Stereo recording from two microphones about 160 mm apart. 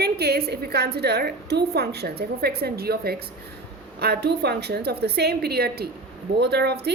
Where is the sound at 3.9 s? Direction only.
85° right.